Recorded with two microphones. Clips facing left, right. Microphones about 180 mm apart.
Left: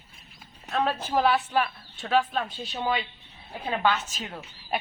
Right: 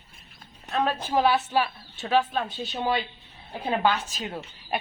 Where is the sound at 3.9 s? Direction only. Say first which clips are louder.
Right 1 dB; 35° right (ahead or behind).